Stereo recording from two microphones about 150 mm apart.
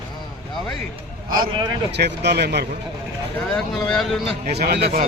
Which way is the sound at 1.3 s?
25° right (ahead or behind).